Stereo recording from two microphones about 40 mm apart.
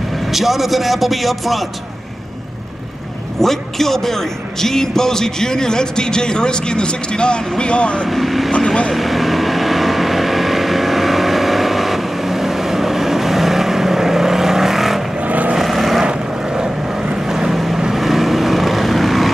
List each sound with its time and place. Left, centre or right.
0.3 s a man's voice: centre
3.3 s a man's voice: centre; by 8.1 s left
8.1 s a man's voice: centre
8.5 s a man's voice: left
8.9 s vehicle: centre
15.1 s vehicle: right
15.5 s vehicle: centre
16.0 s vehicle: centre
17.1 s boat: centre
17.9 s vehicle: centre